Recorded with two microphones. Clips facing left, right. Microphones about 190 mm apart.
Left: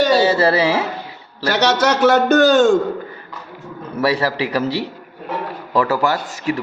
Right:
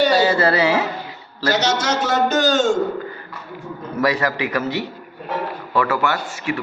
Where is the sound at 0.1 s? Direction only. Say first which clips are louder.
Left 2 dB; 25° left (ahead or behind).